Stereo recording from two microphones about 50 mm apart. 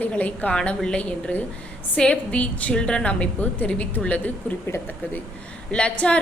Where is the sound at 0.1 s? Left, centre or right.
Left.